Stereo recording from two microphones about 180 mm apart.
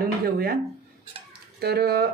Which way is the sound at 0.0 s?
55° right (ahead or behind).